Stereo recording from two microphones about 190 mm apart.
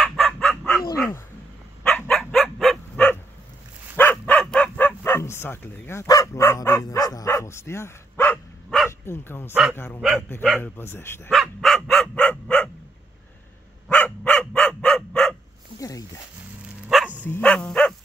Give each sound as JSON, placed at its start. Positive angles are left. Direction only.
{"t": 0.0, "sound": "dog", "side_deg": 5}
{"t": 3.9, "sound": "bow-wow", "side_deg": 10}
{"t": 9.0, "sound": "speech", "side_deg": 10}
{"t": 9.5, "sound": "speech", "side_deg": -5}
{"t": 10.6, "sound": "speech", "side_deg": 10}
{"t": 11.2, "sound": "dog", "side_deg": 0}
{"t": 13.8, "sound": "dog", "side_deg": 5}
{"t": 15.8, "sound": "a sound", "side_deg": 20}
{"t": 16.9, "sound": "dog", "side_deg": 0}